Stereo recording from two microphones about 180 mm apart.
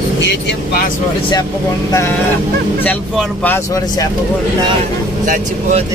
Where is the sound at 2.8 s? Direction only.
10° left (ahead or behind).